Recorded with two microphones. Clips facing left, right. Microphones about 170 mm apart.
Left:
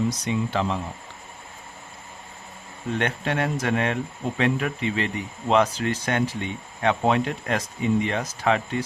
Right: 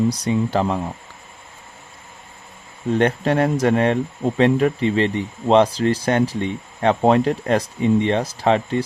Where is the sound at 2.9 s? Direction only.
35° right (ahead or behind).